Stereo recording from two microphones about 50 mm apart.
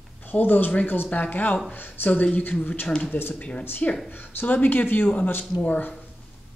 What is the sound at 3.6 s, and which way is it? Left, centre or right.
A woman's voice, left.